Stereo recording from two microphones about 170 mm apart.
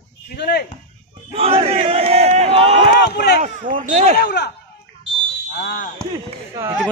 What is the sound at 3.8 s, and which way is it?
Speech, 45° right (ahead or behind).